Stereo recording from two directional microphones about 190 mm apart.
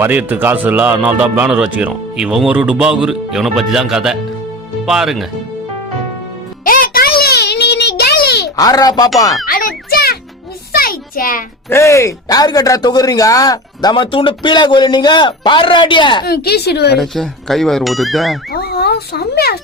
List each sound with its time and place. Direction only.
0.0 s a man's voice: 10° right (ahead or behind)
6.7 s a sound: 50° left (ahead or behind)
8.4 s a child's voice: 20° left (ahead or behind)
9.5 s a sound: 50° left (ahead or behind)
11.7 s speech: 15° left (ahead or behind)
16.2 s a woman's voice: 55° left (ahead or behind)
17.0 s a man's voice: centre (ahead or behind)
18.5 s speech: 55° left (ahead or behind)